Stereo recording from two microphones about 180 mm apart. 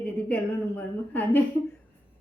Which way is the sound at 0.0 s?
10° left (ahead or behind).